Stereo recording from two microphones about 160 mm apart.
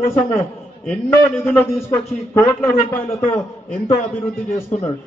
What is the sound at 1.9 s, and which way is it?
A man's voice, 15° left (ahead or behind).